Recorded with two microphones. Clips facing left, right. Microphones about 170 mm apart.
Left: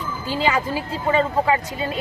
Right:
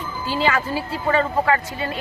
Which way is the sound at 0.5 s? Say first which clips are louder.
Left 3 dB; 15° left (ahead or behind).